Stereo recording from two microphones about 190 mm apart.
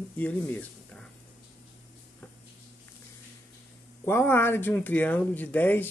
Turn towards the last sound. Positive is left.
turn(degrees=10)  # may be behind; listen again after turning